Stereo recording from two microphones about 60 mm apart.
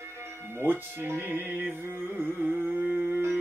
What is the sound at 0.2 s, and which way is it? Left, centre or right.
Music, right.